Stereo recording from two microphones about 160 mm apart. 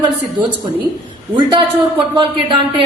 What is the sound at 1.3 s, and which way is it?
Speech, 30° right (ahead or behind).